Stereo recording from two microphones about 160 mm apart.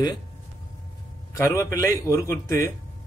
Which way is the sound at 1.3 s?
20° left (ahead or behind).